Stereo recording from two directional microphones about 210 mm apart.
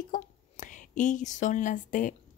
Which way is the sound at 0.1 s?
35° left (ahead or behind).